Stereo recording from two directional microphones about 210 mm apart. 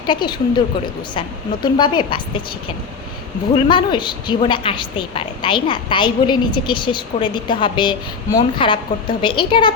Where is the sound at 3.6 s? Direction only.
20° left (ahead or behind).